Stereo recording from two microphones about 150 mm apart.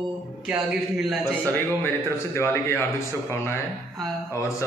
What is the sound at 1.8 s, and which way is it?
A man's voice, 15° left (ahead or behind).